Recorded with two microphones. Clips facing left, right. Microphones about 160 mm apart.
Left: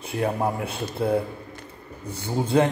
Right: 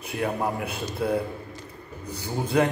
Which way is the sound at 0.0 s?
30° left (ahead or behind).